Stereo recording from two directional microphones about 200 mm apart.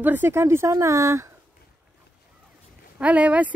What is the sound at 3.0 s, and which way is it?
Speech, 5° right (ahead or behind).